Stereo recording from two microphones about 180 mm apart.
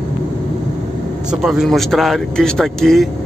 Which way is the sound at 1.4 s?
Centre (ahead or behind).